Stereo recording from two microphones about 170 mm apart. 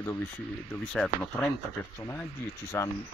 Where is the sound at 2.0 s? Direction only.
15° left (ahead or behind).